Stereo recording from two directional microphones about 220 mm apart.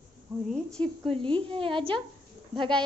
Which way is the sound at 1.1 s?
25° right (ahead or behind).